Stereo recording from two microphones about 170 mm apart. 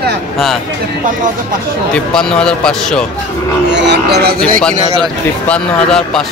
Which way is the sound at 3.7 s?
90° right.